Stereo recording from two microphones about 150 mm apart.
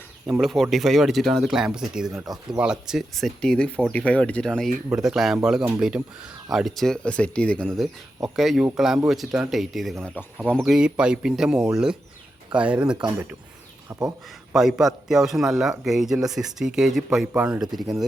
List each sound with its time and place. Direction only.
0.3 s speech: 5° right (ahead or behind)
6.0 s speech: 20° right (ahead or behind)
6.5 s speech: centre (ahead or behind)
14.5 s speech: centre (ahead or behind)